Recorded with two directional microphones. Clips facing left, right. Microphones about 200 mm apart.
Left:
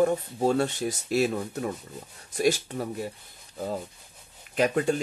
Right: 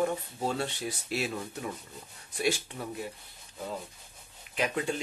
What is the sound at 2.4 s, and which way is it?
Speech, 40° left (ahead or behind).